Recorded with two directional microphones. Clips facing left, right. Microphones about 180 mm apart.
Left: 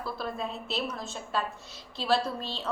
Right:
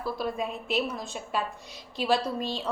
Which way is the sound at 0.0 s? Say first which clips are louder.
Right 4 dB; 10° right (ahead or behind).